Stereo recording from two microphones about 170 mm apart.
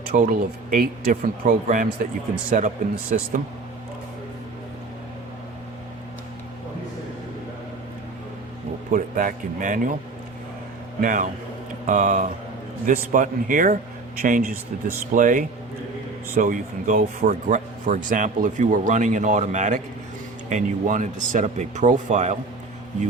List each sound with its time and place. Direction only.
0.1 s speech: 55° right (ahead or behind)
8.9 s speech: 50° right (ahead or behind)
11.0 s speech: 50° right (ahead or behind)